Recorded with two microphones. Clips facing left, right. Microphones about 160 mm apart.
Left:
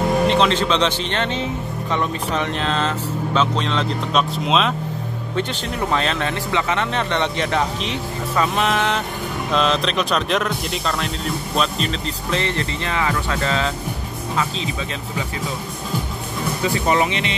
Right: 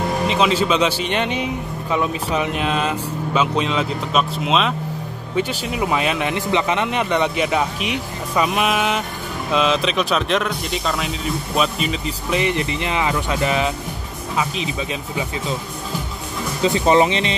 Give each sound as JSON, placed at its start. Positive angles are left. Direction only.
{"t": 0.3, "sound": "speech", "side_deg": -5}
{"t": 16.6, "sound": "speech", "side_deg": -25}